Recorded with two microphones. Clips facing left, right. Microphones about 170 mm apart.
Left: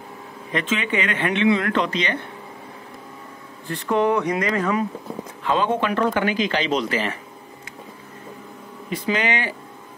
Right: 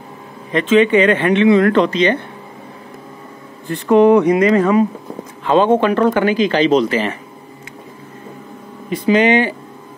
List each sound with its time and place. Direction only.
0.5 s speech: 30° right (ahead or behind)
3.7 s speech: 20° right (ahead or behind)
9.0 s speech: 25° right (ahead or behind)